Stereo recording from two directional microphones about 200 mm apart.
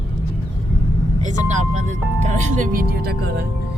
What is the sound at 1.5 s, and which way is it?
Speech, 35° right (ahead or behind).